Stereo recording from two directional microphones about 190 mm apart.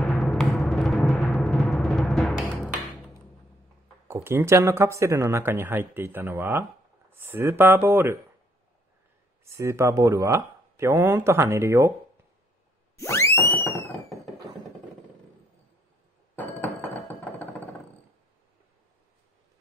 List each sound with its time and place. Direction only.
0.0 s music: 5° left (ahead or behind)
4.1 s speech: 10° right (ahead or behind)
9.4 s speech: 15° right (ahead or behind)
12.9 s music: 15° left (ahead or behind)
16.3 s music: 10° left (ahead or behind)